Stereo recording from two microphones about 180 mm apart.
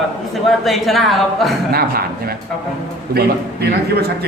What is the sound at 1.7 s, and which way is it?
A man's voice, 55° right (ahead or behind).